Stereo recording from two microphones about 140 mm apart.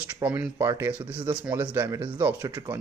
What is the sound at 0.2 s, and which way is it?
Speech, 10° right (ahead or behind).